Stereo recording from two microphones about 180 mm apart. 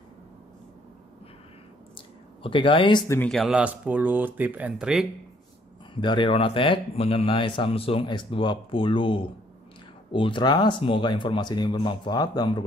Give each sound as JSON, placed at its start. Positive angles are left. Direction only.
{"t": 2.0, "sound": "a sound", "side_deg": 30}
{"t": 3.2, "sound": "speech", "side_deg": 5}
{"t": 5.9, "sound": "speech", "side_deg": 25}